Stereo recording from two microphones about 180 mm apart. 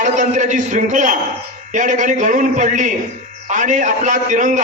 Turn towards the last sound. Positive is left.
turn(degrees=-45)  # may be behind; listen again after turning